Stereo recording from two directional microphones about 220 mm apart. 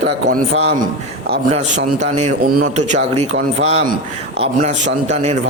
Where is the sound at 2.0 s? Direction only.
35° right (ahead or behind).